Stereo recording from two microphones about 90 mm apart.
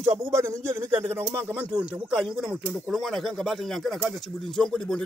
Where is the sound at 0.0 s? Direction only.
35° right (ahead or behind).